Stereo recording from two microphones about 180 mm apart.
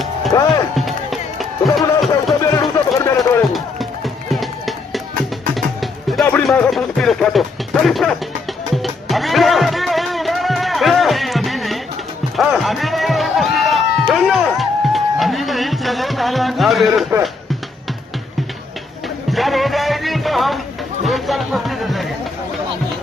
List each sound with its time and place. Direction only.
0.3 s music: 20° left (ahead or behind)
0.7 s music: centre (ahead or behind)
2.4 s a sound: 15° left (ahead or behind)
3.5 s run: centre (ahead or behind)
6.4 s a sound: 5° left (ahead or behind)
8.8 s music: centre (ahead or behind)
12.4 s run: centre (ahead or behind)
19.3 s a sound: centre (ahead or behind)
21.1 s chatter: centre (ahead or behind)